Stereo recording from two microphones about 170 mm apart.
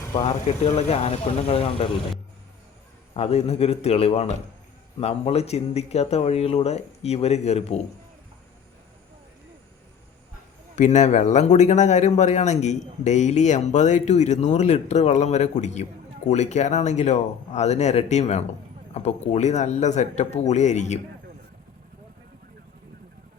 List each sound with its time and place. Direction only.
0.1 s speech: 40° left (ahead or behind)
3.2 s speech: 35° left (ahead or behind)
10.8 s speech: 45° left (ahead or behind)